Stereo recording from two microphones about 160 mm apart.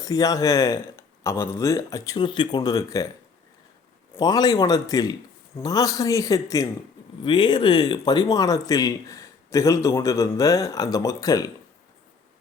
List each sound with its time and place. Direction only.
0.0 s speech: 20° left (ahead or behind)
4.1 s speech: 25° left (ahead or behind)